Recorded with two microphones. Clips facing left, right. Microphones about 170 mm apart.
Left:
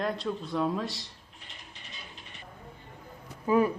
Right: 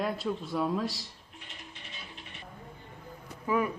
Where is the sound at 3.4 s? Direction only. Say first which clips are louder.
Left 5 dB; 30° left (ahead or behind).